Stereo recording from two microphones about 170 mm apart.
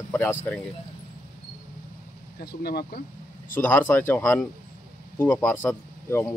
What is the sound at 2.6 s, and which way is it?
Speech, 65° left (ahead or behind).